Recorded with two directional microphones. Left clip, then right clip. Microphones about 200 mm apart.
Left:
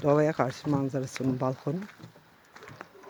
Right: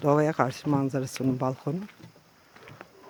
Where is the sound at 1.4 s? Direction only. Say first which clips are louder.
Right 1 dB; 5° right (ahead or behind).